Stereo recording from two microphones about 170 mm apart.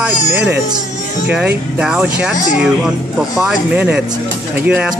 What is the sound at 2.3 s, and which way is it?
Speech, 50° left (ahead or behind).